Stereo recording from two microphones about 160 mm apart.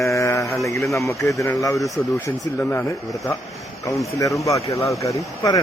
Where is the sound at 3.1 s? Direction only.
20° left (ahead or behind).